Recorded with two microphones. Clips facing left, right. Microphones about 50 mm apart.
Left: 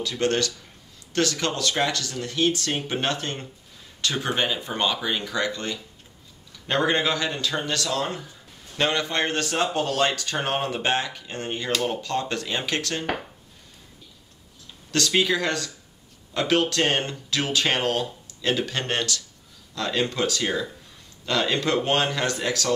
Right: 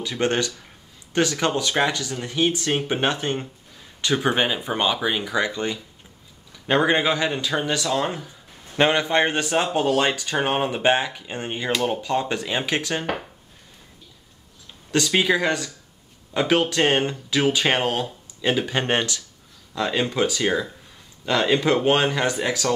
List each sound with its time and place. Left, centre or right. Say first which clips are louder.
0.0 s a man's voice: right 1 dB; right
14.9 s a man's voice: right 2 dB; centre